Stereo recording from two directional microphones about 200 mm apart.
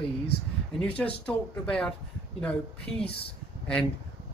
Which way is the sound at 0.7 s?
5° left (ahead or behind).